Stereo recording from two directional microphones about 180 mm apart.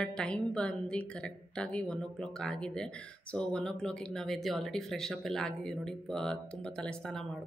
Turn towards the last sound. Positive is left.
turn(degrees=5)  # may be behind; listen again after turning